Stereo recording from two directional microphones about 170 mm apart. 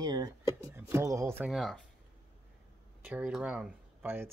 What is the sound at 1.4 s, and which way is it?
Speech, centre (ahead or behind).